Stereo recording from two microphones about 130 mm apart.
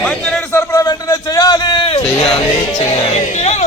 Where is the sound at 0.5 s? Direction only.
20° left (ahead or behind); by 2.0 s 45° left (ahead or behind).